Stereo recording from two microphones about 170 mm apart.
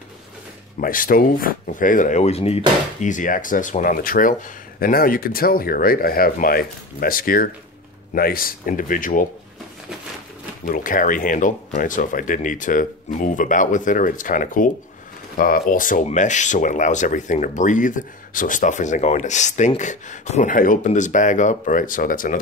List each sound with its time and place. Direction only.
0.7 s speech: 55° left (ahead or behind)
10.6 s speech: 50° left (ahead or behind)